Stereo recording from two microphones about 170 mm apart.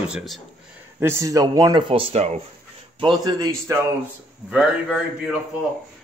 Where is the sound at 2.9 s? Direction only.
25° right (ahead or behind).